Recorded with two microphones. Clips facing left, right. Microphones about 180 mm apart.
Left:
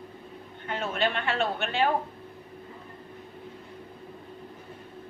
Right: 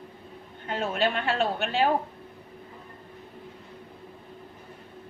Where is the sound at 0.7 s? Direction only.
35° right (ahead or behind).